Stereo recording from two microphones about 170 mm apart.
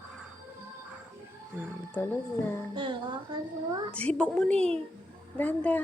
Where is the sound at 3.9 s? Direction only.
5° left (ahead or behind).